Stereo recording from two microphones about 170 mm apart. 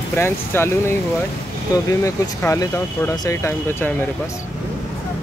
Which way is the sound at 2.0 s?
20° left (ahead or behind).